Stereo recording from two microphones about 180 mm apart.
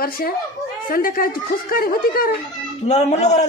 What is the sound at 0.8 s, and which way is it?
A woman's voice, 50° left (ahead or behind).